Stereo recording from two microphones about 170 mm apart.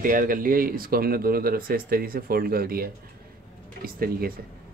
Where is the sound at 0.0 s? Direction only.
55° right (ahead or behind).